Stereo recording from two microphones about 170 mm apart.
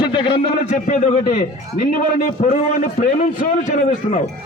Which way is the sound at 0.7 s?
50° left (ahead or behind).